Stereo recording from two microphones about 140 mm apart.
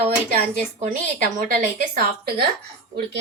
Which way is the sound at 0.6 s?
60° right (ahead or behind).